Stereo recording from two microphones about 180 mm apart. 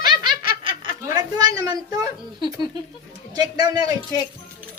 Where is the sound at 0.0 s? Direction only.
25° right (ahead or behind).